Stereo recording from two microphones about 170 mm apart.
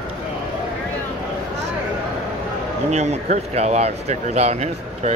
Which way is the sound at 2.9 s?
40° right (ahead or behind).